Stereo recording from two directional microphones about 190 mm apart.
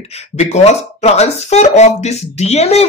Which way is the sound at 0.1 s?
35° left (ahead or behind).